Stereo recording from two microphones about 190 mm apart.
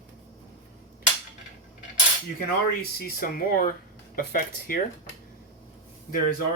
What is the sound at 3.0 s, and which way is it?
Speech, 50° left (ahead or behind).